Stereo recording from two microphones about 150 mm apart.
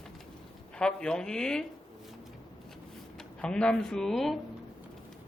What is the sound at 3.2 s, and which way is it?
Speech, 5° left (ahead or behind).